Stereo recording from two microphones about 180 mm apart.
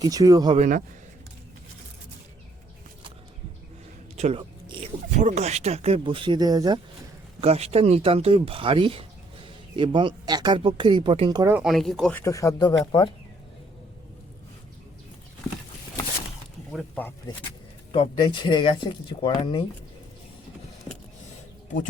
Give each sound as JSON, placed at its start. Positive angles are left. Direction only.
{"t": 0.0, "sound": "speech", "side_deg": -20}
{"t": 0.5, "sound": "speech", "side_deg": -40}
{"t": 4.2, "sound": "a sound", "side_deg": -30}
{"t": 5.1, "sound": "speech", "side_deg": -40}
{"t": 7.4, "sound": "speech", "side_deg": -35}
{"t": 11.5, "sound": "speech", "side_deg": 0}
{"t": 12.2, "sound": "speech", "side_deg": 15}
{"t": 16.9, "sound": "speech", "side_deg": 10}
{"t": 17.9, "sound": "speech", "side_deg": 25}